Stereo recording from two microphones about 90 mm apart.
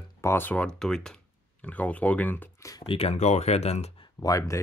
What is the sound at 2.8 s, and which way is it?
Speech, 90° left.